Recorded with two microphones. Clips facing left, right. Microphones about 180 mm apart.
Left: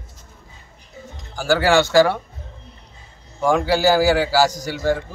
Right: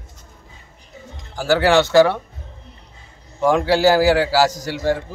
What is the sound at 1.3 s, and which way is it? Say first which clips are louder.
Speech: right 1 dB; centre (ahead or behind).